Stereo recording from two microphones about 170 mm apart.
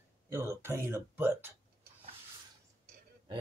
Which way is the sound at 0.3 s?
15° right (ahead or behind).